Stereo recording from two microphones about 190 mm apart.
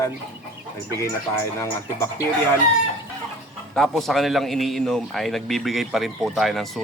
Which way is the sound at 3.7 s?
Centre (ahead or behind).